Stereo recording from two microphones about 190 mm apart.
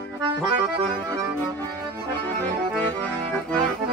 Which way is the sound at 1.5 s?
10° left (ahead or behind).